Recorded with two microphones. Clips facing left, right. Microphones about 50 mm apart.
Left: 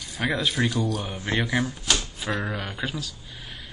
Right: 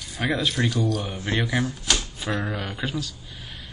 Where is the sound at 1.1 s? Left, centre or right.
Left.